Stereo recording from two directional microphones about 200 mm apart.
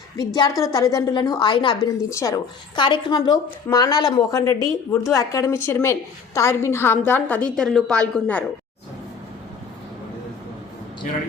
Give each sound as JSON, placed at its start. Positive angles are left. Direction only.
{"t": 0.3, "sound": "a woman's voice", "side_deg": 15}